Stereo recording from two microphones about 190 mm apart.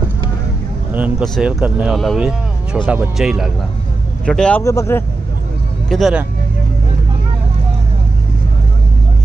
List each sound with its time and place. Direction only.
0.9 s speech: 10° right (ahead or behind); by 5.0 s 15° left (ahead or behind)
5.9 s speech: centre (ahead or behind)